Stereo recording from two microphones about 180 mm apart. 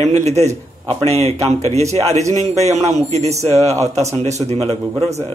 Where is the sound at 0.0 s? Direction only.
40° right (ahead or behind).